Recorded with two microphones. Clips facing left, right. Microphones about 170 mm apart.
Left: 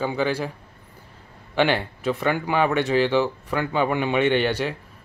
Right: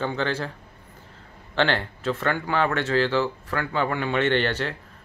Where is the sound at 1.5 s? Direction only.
10° left (ahead or behind).